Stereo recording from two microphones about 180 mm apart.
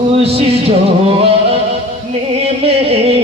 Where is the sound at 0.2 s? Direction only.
35° right (ahead or behind).